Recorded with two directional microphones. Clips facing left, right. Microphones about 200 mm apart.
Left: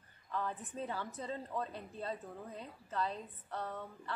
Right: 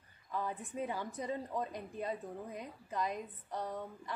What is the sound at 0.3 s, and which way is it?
A woman's voice, 15° right (ahead or behind).